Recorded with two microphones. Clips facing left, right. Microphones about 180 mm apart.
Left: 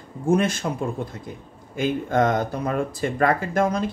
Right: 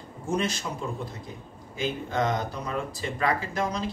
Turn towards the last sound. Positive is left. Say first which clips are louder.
# left 7 dB
turn(degrees=50)  # may be behind; listen again after turning